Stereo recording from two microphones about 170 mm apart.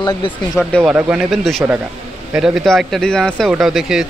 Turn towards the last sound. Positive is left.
turn(degrees=0)  # may be behind; listen again after turning